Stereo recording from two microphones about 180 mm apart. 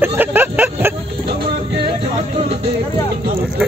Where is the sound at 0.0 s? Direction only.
10° right (ahead or behind).